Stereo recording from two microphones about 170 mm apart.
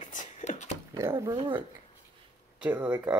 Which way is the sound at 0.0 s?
45° left (ahead or behind).